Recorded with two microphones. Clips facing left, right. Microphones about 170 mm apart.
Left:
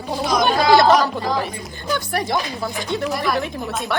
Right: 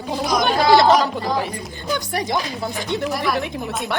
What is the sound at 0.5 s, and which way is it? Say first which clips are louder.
Chatter: right 1 dB; 20° right (ahead or behind).